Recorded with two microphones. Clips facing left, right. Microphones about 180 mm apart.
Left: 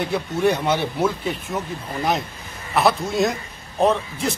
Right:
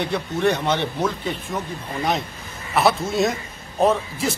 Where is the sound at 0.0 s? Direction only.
10° left (ahead or behind).